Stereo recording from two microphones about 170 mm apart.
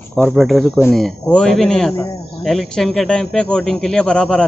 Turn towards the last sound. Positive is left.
turn(degrees=5)  # may be behind; listen again after turning